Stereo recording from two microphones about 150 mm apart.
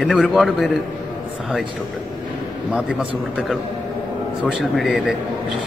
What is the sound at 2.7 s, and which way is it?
Speech, 5° right (ahead or behind).